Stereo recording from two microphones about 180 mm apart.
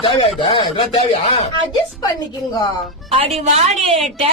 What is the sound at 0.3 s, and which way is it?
Speech, 25° left (ahead or behind).